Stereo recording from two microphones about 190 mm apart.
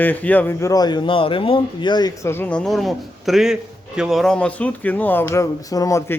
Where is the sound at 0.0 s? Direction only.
10° left (ahead or behind).